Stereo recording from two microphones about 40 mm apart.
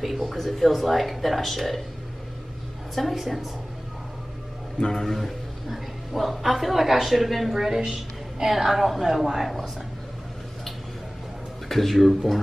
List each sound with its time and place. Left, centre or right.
0.0 s a woman's voice: centre
2.9 s a woman's voice: centre
4.7 s a man's voice: centre
5.0 s a woman's voice: centre
11.7 s a woman's voice: centre